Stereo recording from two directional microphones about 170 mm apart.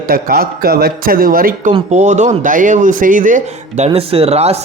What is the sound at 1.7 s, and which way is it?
Speech, 40° right (ahead or behind).